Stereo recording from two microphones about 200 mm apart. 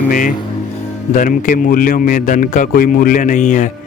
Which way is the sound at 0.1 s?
40° left (ahead or behind).